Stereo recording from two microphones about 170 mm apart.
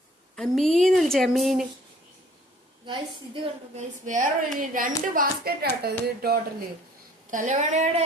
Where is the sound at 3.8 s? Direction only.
45° right (ahead or behind); by 6.4 s 65° right (ahead or behind).